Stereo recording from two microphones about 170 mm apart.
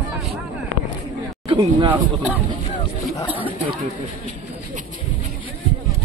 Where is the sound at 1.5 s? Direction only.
30° right (ahead or behind).